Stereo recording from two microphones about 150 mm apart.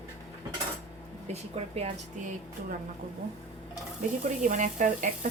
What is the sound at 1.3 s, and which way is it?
Speech, 45° right (ahead or behind).